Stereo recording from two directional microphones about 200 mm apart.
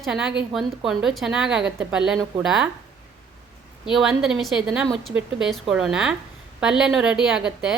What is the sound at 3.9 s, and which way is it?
A woman's voice, centre (ahead or behind).